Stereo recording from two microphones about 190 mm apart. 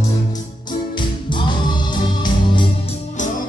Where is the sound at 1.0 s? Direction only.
25° left (ahead or behind).